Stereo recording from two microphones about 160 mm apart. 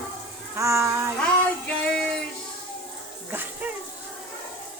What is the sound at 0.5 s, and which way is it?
Speech, 20° right (ahead or behind).